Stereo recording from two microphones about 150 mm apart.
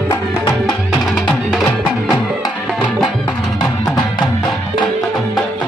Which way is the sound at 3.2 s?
30° left (ahead or behind).